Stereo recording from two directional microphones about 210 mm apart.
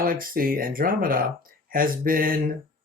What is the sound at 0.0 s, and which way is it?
Speech, 40° right (ahead or behind).